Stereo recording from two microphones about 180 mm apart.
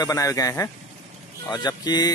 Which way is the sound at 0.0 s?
20° left (ahead or behind).